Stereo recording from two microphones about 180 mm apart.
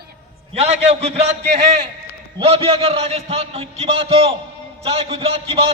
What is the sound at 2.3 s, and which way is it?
A man's voice, 30° right (ahead or behind).